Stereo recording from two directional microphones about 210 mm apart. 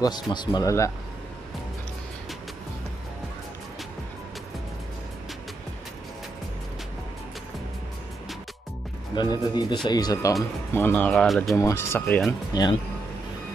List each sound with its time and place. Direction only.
0.0 s speech: 20° left (ahead or behind)
9.1 s speech: 20° left (ahead or behind); by 11.5 s centre (ahead or behind)
11.5 s speech: 15° left (ahead or behind)